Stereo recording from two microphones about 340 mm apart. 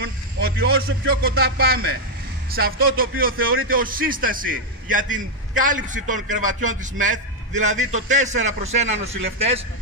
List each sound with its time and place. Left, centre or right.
0.0 s a man's voice: right